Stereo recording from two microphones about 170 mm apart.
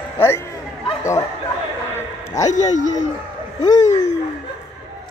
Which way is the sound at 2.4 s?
45° left (ahead or behind).